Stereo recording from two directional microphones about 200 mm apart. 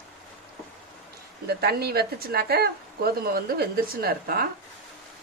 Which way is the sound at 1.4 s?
50° right (ahead or behind).